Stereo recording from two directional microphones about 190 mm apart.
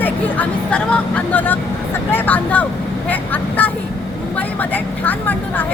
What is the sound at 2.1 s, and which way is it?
Speech, 10° left (ahead or behind).